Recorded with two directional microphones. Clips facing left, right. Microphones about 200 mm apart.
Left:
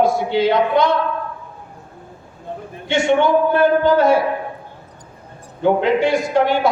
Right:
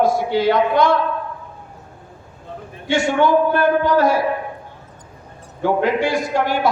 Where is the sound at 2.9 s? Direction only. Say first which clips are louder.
Left 1 dB; 25° left (ahead or behind).